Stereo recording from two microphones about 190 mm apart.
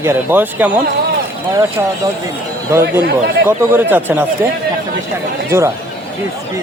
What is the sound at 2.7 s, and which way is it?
A man's voice, 15° right (ahead or behind).